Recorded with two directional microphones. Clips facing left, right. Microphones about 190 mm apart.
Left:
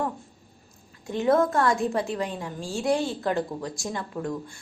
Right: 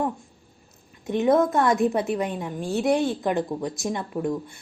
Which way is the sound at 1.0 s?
20° right (ahead or behind).